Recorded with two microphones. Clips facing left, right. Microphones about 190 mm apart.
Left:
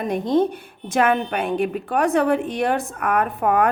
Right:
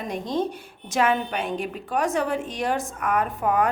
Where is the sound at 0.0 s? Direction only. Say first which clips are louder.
Left 7 dB; 55° left (ahead or behind).